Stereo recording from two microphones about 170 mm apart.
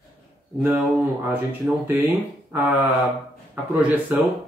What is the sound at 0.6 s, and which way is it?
Speech, 10° right (ahead or behind).